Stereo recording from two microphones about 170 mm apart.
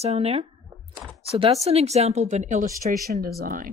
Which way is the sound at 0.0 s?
40° right (ahead or behind).